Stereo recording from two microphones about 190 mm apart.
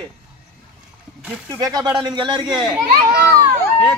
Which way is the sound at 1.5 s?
20° right (ahead or behind).